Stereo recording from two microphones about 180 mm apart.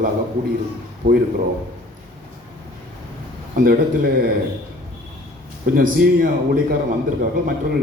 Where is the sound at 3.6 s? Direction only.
55° right (ahead or behind).